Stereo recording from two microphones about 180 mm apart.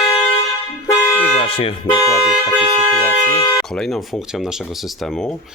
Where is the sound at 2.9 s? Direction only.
15° left (ahead or behind).